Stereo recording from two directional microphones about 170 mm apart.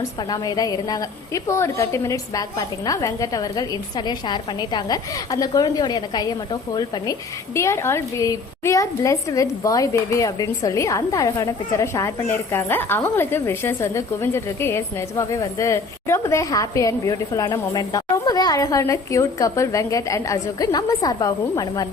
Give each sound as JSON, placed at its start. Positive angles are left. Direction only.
{"t": 0.0, "sound": "a woman's voice", "side_deg": 20}